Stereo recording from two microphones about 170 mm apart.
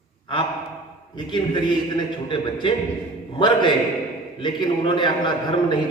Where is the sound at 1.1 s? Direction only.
25° left (ahead or behind).